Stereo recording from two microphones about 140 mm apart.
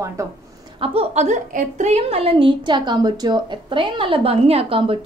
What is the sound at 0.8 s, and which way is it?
A woman's voice, 50° right (ahead or behind).